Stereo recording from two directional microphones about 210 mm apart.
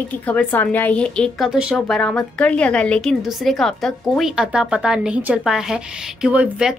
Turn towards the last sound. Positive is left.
turn(degrees=-5)  # may be behind; listen again after turning